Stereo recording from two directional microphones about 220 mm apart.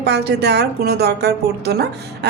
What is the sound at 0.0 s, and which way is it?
A woman's voice, 50° right (ahead or behind).